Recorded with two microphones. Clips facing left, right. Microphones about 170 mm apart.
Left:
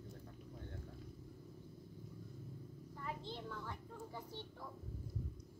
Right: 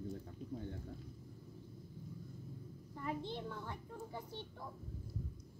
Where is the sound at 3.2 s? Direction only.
55° right (ahead or behind).